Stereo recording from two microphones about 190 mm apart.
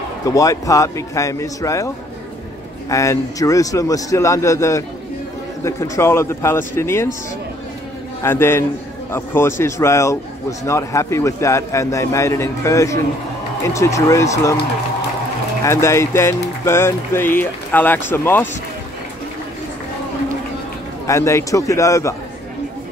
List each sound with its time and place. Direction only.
0.2 s speech: 15° left (ahead or behind)
2.9 s speech: 15° left (ahead or behind)
8.2 s speech: 10° left (ahead or behind)
15.6 s speech: 15° left (ahead or behind)
21.1 s speech: 15° left (ahead or behind)